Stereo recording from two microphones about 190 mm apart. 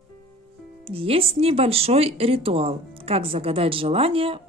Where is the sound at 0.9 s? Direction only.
30° right (ahead or behind).